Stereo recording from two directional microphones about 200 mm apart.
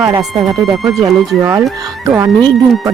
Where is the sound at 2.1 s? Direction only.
15° right (ahead or behind).